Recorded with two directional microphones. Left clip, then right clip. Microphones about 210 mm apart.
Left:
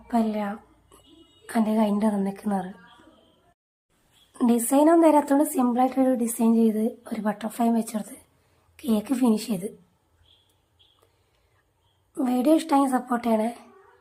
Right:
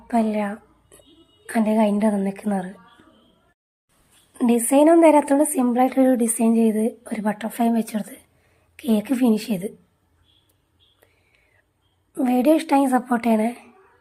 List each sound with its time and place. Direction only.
0.1 s a woman's voice: 10° right (ahead or behind)
4.4 s a woman's voice: 5° right (ahead or behind)
12.1 s a woman's voice: 15° right (ahead or behind)